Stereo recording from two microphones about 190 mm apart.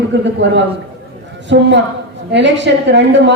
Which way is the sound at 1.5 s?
65° right (ahead or behind).